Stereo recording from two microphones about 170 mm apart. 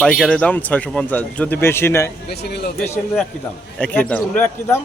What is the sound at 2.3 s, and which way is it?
Speech, 75° left (ahead or behind).